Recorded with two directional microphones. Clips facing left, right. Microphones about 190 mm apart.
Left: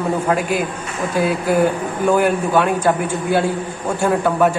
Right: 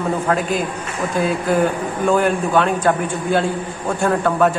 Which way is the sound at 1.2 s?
10° left (ahead or behind).